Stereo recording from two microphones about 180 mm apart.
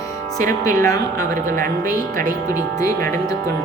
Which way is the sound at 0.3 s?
15° left (ahead or behind).